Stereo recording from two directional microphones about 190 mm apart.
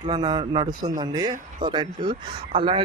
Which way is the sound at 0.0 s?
20° right (ahead or behind).